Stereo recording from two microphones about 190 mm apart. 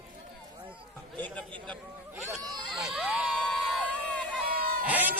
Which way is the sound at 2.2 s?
20° right (ahead or behind).